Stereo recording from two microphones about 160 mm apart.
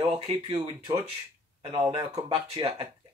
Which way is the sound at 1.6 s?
40° right (ahead or behind).